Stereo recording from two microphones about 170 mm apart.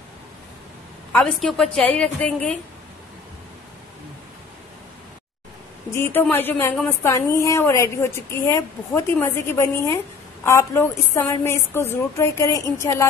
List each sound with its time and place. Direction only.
1.1 s a woman's voice: 5° left (ahead or behind)
5.9 s a woman's voice: 15° left (ahead or behind)